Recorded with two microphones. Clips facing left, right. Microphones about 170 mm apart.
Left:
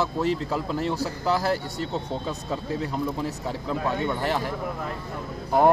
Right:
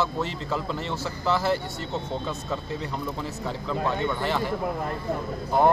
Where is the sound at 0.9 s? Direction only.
40° left (ahead or behind).